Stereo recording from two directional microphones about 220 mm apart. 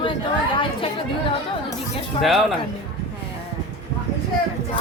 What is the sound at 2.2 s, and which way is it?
Speech, centre (ahead or behind).